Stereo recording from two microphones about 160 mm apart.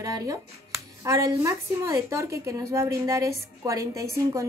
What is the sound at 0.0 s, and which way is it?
Speech, 20° right (ahead or behind).